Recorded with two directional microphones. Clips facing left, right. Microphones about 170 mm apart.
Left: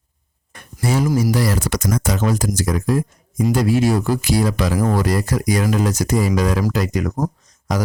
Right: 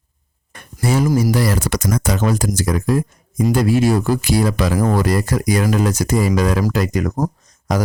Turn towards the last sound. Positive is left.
turn(degrees=-45)  # may be behind; listen again after turning